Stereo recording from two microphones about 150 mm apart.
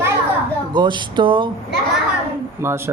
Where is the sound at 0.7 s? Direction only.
30° right (ahead or behind).